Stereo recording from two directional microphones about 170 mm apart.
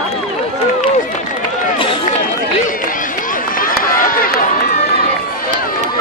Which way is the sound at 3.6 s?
55° left (ahead or behind).